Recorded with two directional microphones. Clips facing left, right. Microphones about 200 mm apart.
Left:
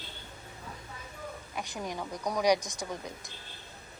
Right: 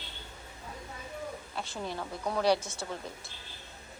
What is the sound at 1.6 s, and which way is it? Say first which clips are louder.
A woman's voice: left 1 dB; 15° left (ahead or behind).